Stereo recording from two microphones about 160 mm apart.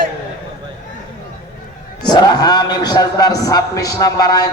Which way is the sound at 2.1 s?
25° left (ahead or behind).